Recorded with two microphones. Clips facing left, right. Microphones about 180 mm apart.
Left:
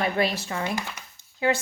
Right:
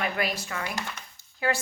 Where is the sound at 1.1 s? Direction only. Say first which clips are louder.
Left 4 dB; 20° left (ahead or behind).